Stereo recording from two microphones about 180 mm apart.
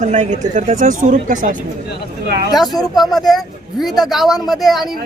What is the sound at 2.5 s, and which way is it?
Speech, centre (ahead or behind).